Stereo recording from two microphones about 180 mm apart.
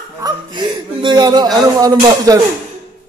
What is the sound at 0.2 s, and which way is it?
Speech, 25° right (ahead or behind).